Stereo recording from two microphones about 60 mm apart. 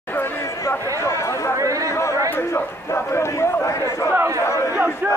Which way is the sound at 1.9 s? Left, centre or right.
Left.